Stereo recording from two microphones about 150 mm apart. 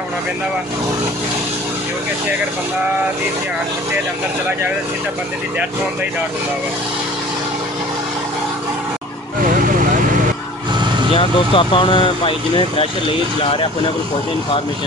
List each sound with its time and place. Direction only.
11.1 s speech: 35° left (ahead or behind)